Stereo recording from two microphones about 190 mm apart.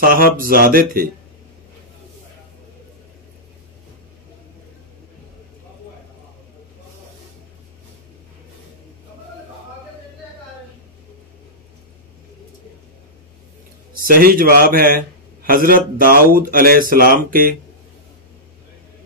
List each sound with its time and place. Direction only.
0.0 s a man's voice: 45° right (ahead or behind)
13.9 s a man's voice: 50° right (ahead or behind)